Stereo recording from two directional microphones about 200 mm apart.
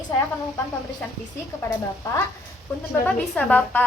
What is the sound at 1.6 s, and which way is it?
A woman's voice, 15° left (ahead or behind).